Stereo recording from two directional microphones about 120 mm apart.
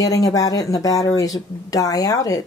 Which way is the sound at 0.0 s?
30° left (ahead or behind).